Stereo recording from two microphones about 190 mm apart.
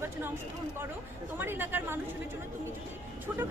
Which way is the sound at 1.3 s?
10° right (ahead or behind).